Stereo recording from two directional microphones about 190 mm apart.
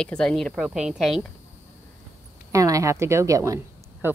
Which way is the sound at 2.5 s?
15° right (ahead or behind).